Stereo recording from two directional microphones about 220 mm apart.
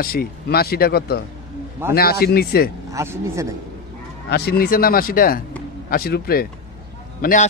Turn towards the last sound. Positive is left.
turn(degrees=35)  # may be behind; listen again after turning